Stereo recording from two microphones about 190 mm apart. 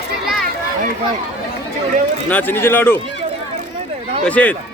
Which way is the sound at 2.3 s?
10° left (ahead or behind).